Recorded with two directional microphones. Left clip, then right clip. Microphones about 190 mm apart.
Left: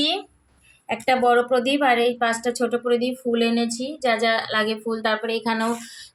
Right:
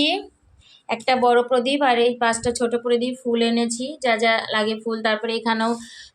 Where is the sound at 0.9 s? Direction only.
Centre (ahead or behind).